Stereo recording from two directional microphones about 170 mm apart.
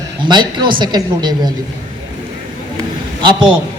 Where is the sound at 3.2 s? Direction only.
30° right (ahead or behind).